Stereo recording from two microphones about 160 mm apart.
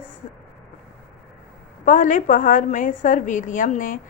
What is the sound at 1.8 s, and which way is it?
A woman's voice, 55° left (ahead or behind).